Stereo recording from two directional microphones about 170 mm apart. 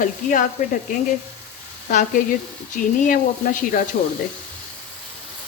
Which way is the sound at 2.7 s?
50° left (ahead or behind).